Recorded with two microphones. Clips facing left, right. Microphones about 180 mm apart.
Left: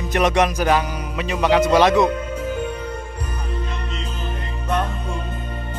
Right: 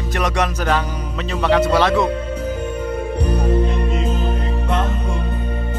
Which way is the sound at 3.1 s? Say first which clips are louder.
Right 11 dB; 70° right (ahead or behind).